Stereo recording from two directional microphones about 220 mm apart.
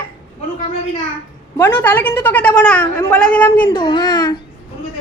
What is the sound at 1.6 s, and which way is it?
Speech, 10° left (ahead or behind).